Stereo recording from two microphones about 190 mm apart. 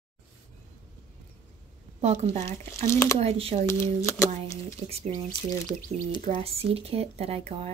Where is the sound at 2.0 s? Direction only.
35° right (ahead or behind).